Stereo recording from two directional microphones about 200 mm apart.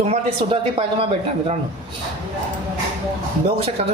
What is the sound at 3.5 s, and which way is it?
Speech, 30° right (ahead or behind).